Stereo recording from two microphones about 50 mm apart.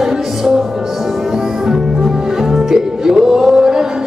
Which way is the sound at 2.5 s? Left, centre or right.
Centre.